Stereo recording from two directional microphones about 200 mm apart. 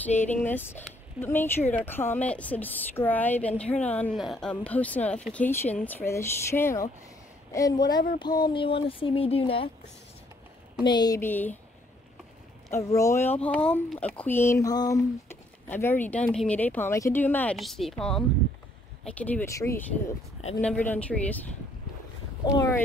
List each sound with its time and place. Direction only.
0.2 s speech: 10° left (ahead or behind); by 9.7 s 25° left (ahead or behind)
10.8 s speech: 20° left (ahead or behind)
12.7 s speech: 15° left (ahead or behind)
22.4 s speech: 20° left (ahead or behind)